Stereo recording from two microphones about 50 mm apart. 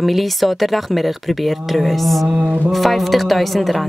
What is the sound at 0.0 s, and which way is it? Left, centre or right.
A woman's voice, centre.